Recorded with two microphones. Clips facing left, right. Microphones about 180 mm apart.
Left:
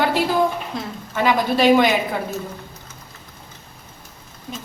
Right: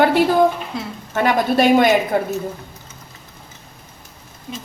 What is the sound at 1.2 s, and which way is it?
A woman's voice, 45° right (ahead or behind).